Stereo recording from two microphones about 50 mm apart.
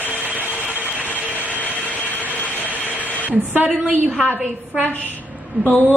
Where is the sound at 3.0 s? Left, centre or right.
Right.